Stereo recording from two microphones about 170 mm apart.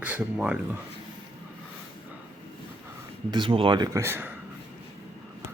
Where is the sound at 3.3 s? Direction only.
30° right (ahead or behind); by 4.3 s 15° right (ahead or behind).